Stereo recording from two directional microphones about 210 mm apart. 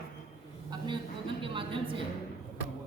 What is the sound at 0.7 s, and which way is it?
A woman's voice, 20° right (ahead or behind).